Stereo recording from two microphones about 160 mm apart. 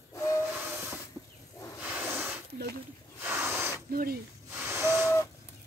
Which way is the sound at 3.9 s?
65° right (ahead or behind).